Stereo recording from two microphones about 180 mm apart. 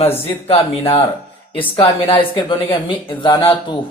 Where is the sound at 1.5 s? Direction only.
30° left (ahead or behind).